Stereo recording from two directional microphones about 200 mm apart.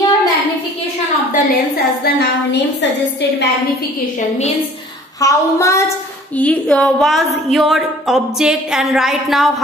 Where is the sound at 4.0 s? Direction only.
35° left (ahead or behind).